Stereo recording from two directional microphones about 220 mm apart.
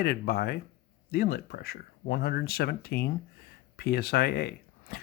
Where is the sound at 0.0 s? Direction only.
45° left (ahead or behind).